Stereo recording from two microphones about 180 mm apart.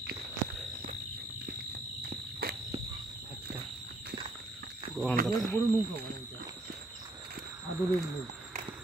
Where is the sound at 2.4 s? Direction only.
60° right (ahead or behind).